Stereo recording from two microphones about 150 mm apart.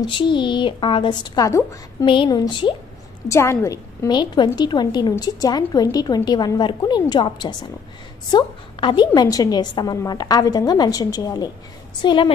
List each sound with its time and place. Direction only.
0.0 s a woman's voice: 35° left (ahead or behind)
3.3 s a woman's voice: 20° left (ahead or behind)